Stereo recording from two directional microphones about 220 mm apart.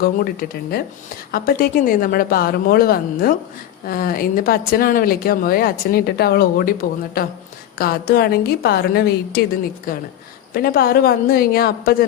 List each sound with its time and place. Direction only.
0.0 s a woman's voice: 40° left (ahead or behind)